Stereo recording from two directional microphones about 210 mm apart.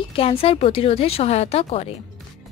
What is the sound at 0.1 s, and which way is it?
Speech, 25° left (ahead or behind).